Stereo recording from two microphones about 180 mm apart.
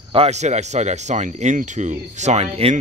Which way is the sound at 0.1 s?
35° right (ahead or behind).